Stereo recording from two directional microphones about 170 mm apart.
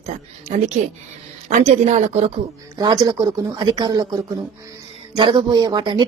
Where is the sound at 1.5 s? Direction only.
40° right (ahead or behind).